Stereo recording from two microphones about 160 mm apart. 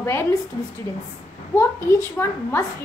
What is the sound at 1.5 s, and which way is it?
A woman's voice, 15° left (ahead or behind).